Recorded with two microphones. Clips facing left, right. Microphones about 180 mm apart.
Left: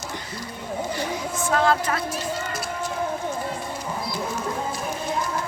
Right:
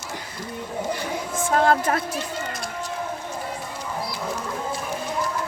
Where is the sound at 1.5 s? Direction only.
45° right (ahead or behind).